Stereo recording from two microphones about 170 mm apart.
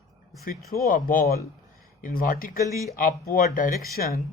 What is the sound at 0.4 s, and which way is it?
Speech, 60° left (ahead or behind).